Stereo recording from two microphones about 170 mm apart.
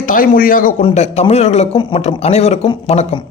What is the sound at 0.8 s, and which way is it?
A man's voice, 35° left (ahead or behind).